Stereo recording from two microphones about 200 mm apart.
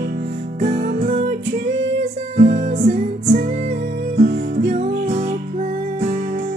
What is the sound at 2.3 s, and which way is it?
Music, 40° right (ahead or behind).